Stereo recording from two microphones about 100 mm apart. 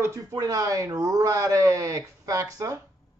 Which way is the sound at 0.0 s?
30° right (ahead or behind).